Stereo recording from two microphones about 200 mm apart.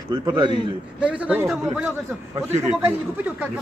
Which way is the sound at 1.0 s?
10° right (ahead or behind).